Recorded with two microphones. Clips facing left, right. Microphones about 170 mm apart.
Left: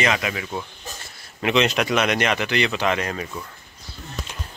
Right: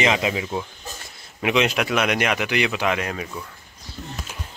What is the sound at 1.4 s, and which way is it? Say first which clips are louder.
Speech: left 1 dB; 10° right (ahead or behind).